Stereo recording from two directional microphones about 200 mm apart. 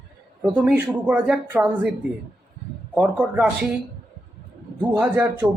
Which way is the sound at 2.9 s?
5° right (ahead or behind).